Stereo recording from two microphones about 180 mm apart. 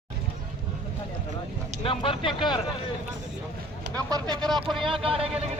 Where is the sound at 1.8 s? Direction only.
30° left (ahead or behind).